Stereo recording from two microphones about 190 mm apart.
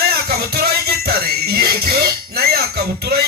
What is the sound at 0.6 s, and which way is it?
Music, 55° right (ahead or behind).